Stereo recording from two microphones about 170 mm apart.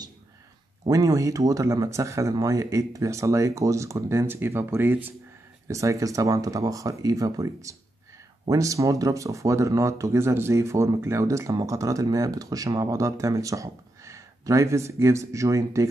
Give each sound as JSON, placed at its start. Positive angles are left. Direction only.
{"t": 0.8, "sound": "speech", "side_deg": -20}